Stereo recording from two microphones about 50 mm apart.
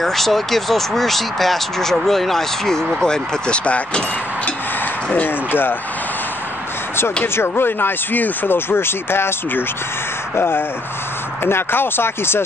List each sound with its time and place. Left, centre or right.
0.0 s speech: centre; by 4.0 s left
5.2 s speech: left
7.3 s speech: left
10.3 s speech: left